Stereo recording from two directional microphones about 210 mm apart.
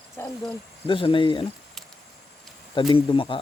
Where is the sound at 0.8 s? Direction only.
25° left (ahead or behind).